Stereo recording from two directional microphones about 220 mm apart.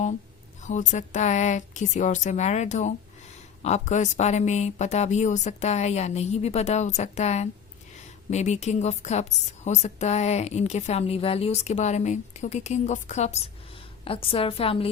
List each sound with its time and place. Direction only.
0.6 s a woman's voice: 35° left (ahead or behind)